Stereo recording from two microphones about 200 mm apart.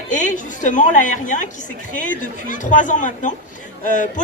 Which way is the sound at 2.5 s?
40° left (ahead or behind).